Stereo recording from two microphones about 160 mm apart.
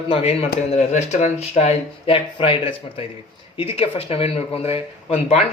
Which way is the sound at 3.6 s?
40° left (ahead or behind).